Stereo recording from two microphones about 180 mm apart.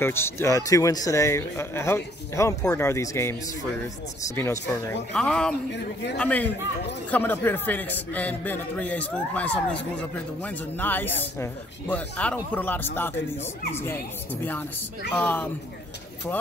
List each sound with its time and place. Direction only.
0.0 s a man's voice: 15° left (ahead or behind)
4.4 s a man's voice: 15° left (ahead or behind)
15.1 s a man's voice: 10° left (ahead or behind)